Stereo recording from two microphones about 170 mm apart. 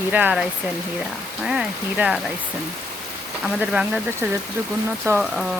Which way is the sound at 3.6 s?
5° right (ahead or behind).